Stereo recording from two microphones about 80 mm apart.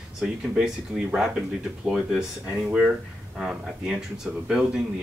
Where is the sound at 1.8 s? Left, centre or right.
Centre.